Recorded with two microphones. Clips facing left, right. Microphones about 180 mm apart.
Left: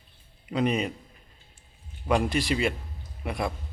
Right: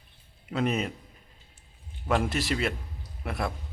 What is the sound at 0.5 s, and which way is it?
Speech, 5° right (ahead or behind).